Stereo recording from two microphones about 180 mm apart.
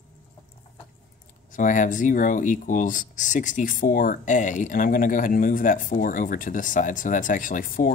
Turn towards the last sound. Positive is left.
turn(degrees=50)  # may be behind; listen again after turning